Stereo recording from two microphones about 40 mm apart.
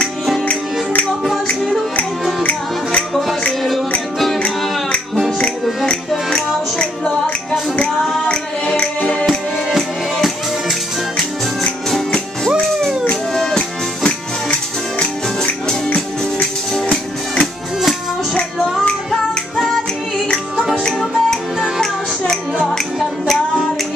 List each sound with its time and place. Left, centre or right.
5.9 s music: centre
9.7 s music: centre
13.3 s music: centre
16.7 s music: centre
20.8 s music: centre